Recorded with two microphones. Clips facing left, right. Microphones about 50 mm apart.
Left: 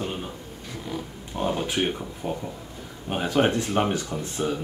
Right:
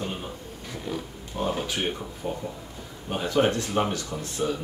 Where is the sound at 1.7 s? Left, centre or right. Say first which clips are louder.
Left 3 dB; centre.